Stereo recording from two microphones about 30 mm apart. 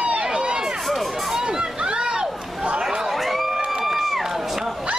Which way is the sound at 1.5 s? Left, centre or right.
Right.